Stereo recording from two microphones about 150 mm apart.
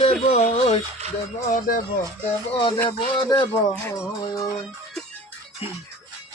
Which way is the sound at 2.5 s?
35° left (ahead or behind).